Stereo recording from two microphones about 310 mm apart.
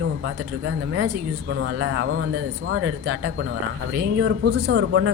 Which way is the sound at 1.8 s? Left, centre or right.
Right.